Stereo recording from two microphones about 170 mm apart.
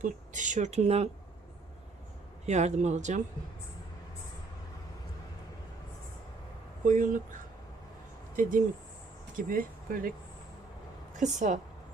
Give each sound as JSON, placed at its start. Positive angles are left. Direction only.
{"t": 0.0, "sound": "speech", "side_deg": -45}
{"t": 2.5, "sound": "speech", "side_deg": -40}
{"t": 6.8, "sound": "speech", "side_deg": -50}
{"t": 8.4, "sound": "speech", "side_deg": -50}
{"t": 11.2, "sound": "speech", "side_deg": -45}